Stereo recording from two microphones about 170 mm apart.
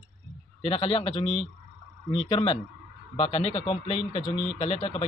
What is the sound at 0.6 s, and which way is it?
A man's voice, 35° left (ahead or behind).